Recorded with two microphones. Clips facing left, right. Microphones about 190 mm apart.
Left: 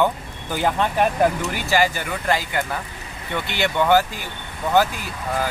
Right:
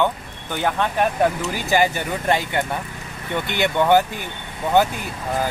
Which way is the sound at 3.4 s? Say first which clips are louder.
Right 2 dB; 55° right (ahead or behind).